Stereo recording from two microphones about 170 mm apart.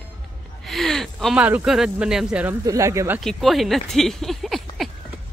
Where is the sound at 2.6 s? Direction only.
20° right (ahead or behind).